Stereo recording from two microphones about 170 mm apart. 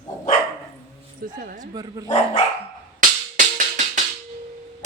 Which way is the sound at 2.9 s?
50° right (ahead or behind).